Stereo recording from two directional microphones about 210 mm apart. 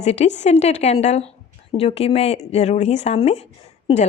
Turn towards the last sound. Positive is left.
turn(degrees=30)  # may be behind; listen again after turning